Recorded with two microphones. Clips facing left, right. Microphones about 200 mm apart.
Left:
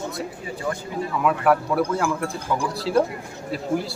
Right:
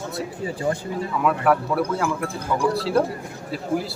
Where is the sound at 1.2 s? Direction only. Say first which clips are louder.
Even; centre (ahead or behind).